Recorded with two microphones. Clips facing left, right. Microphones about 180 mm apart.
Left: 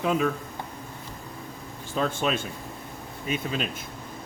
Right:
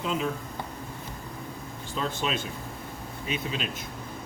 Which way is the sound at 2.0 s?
50° left (ahead or behind).